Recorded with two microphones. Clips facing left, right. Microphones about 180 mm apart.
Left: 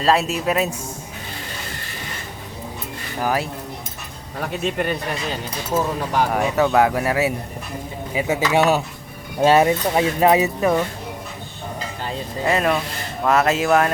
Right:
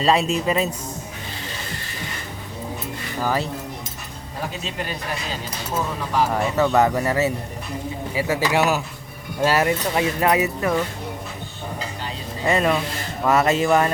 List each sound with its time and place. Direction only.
0.0 s speech: centre (ahead or behind)
3.2 s speech: 10° left (ahead or behind)
4.6 s speech: 60° left (ahead or behind)
6.3 s speech: 10° left (ahead or behind)
12.5 s speech: centre (ahead or behind)